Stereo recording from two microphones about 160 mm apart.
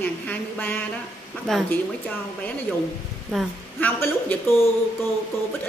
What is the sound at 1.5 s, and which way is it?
Speech, 5° left (ahead or behind).